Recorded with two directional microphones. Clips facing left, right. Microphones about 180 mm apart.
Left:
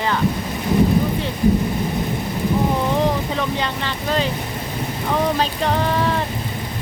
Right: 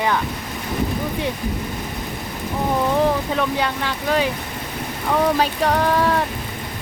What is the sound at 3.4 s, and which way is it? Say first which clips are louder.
Speech: right 1 dB; 10° right (ahead or behind).